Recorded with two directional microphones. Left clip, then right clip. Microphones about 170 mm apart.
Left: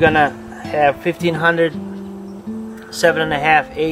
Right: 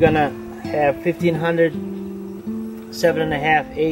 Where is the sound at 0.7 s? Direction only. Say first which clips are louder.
Left 3 dB; 45° left (ahead or behind).